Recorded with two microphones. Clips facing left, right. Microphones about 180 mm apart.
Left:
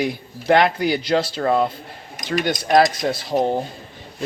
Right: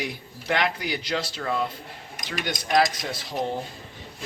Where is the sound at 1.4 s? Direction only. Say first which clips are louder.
Left 9 dB; 45° left (ahead or behind).